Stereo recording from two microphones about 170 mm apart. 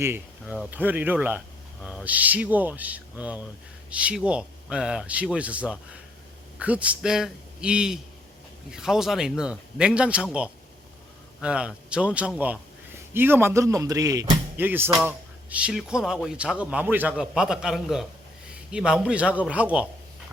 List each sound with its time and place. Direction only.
0.0 s a man's voice: 15° right (ahead or behind)